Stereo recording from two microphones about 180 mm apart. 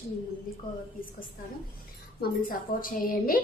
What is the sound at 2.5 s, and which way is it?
Speech, 50° left (ahead or behind).